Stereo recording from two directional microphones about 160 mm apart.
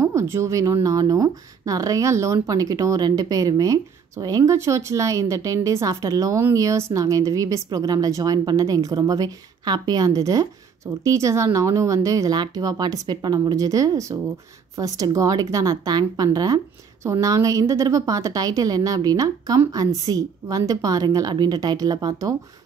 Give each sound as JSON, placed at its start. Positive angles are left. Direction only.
{"t": 0.0, "sound": "speech", "side_deg": -20}